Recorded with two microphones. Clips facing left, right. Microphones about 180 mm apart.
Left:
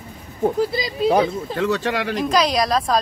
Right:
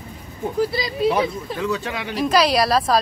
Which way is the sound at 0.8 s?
20° left (ahead or behind).